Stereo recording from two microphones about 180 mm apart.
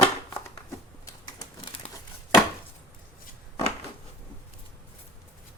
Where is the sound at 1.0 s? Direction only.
20° left (ahead or behind).